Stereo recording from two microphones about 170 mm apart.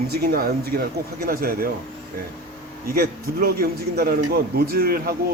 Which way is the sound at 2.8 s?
60° right (ahead or behind).